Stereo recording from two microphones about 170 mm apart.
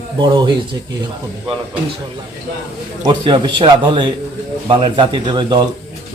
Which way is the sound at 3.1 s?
30° right (ahead or behind).